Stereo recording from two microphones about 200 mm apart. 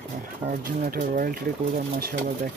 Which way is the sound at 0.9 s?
45° right (ahead or behind).